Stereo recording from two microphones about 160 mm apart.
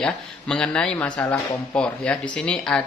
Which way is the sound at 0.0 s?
5° left (ahead or behind).